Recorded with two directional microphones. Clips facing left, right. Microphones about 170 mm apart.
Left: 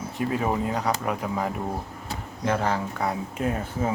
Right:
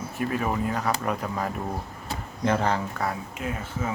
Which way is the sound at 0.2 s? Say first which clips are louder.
Left 1 dB; 20° left (ahead or behind).